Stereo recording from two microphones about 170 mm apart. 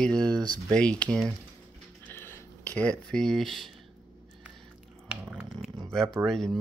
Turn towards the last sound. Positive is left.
turn(degrees=0)  # may be behind; listen again after turning